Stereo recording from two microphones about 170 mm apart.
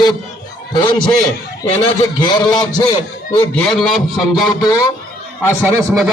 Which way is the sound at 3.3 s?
5° left (ahead or behind).